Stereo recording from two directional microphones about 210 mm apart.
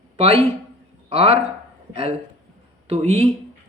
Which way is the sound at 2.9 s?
30° right (ahead or behind).